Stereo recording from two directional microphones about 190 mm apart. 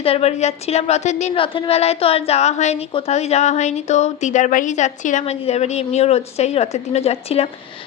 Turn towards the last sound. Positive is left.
turn(degrees=30)  # may be behind; listen again after turning